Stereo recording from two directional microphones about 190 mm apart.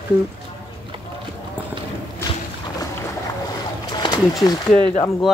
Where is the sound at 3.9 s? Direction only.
20° left (ahead or behind).